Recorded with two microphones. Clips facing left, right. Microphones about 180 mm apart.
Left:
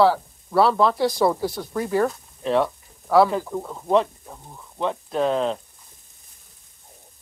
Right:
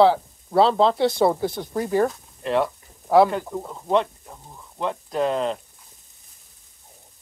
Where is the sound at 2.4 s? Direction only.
Centre (ahead or behind).